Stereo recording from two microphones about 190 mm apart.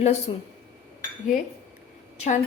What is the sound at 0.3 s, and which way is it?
Speech, 25° left (ahead or behind).